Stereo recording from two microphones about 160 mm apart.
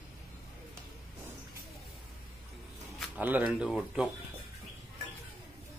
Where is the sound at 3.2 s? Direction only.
10° right (ahead or behind).